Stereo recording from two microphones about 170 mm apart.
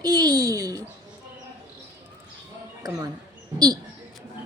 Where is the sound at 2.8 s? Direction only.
25° right (ahead or behind).